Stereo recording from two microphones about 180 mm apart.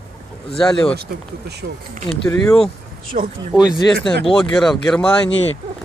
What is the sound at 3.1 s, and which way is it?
Speech, 40° right (ahead or behind).